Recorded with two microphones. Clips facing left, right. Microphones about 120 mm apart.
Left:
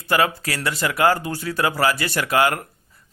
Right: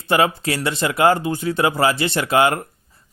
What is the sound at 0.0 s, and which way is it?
Speech, 25° right (ahead or behind).